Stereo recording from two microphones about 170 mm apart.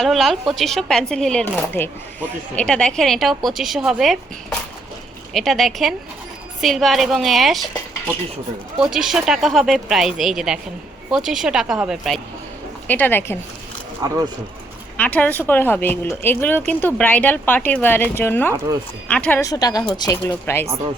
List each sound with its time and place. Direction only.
0.0 s a woman's voice: centre (ahead or behind)
8.8 s a woman's voice: 5° right (ahead or behind)
12.9 s speech: 10° left (ahead or behind)
14.0 s speech: 20° right (ahead or behind)
14.9 s speech: 10° left (ahead or behind)
19.4 s speech: 20° left (ahead or behind)